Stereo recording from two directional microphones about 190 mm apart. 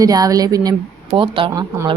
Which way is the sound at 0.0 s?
20° right (ahead or behind).